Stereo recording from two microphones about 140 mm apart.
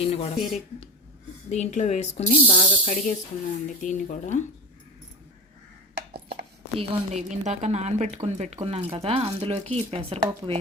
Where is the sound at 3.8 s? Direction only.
65° left (ahead or behind).